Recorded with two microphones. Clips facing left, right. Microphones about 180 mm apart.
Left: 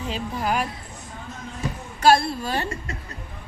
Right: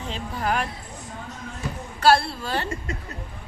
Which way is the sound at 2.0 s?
15° left (ahead or behind).